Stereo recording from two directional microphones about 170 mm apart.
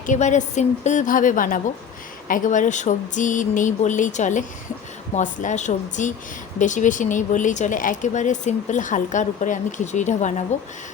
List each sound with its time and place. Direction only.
0.0 s speech: 45° left (ahead or behind)